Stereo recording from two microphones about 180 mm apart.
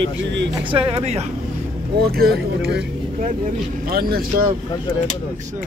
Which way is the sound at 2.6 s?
65° right (ahead or behind).